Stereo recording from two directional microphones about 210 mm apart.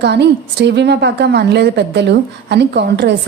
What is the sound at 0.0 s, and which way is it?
A woman's voice, 55° right (ahead or behind).